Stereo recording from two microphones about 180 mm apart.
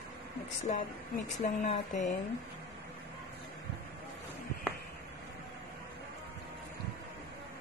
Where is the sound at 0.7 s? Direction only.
40° left (ahead or behind).